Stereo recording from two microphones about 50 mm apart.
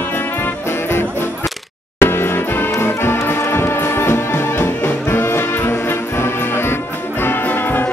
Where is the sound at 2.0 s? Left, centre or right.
Left.